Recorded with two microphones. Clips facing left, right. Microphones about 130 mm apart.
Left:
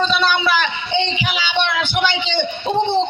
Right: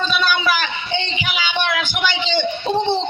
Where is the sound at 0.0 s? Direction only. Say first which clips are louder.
Left 2 dB; 25° left (ahead or behind).